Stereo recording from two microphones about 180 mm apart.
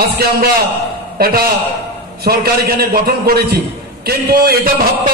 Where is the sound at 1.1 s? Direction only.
60° right (ahead or behind).